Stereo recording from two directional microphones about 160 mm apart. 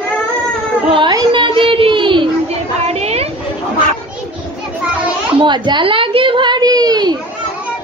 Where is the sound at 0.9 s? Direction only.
30° right (ahead or behind).